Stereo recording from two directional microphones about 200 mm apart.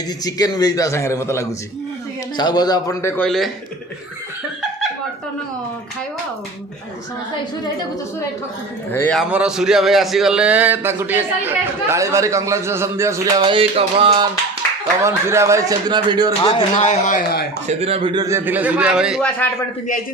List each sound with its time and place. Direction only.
0.3 s a man's voice: 20° left (ahead or behind)
3.2 s a man's voice: centre (ahead or behind)
8.9 s a man's voice: 10° left (ahead or behind)
9.3 s a man's voice: 5° right (ahead or behind); by 14.3 s 25° right (ahead or behind)
15.0 s a man's voice: 15° right (ahead or behind)
16.4 s speech: 30° left (ahead or behind)
17.7 s a man's voice: 30° right (ahead or behind); by 19.3 s 5° right (ahead or behind)